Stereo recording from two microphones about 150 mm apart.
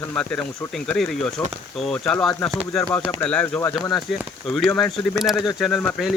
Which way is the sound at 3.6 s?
20° left (ahead or behind).